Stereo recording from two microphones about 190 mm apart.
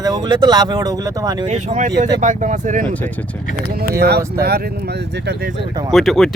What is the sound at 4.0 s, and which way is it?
Speech, 60° right (ahead or behind).